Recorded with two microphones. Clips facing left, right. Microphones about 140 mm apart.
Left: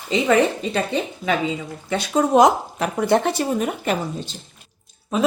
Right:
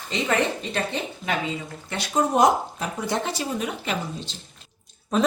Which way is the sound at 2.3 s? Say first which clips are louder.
Left 5 dB; 80° left.